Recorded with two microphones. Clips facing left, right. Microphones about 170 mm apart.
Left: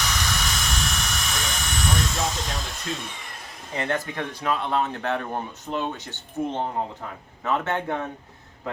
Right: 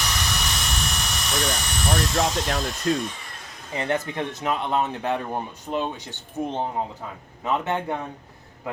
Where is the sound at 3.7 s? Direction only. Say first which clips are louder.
Right 2 dB; 15° right (ahead or behind).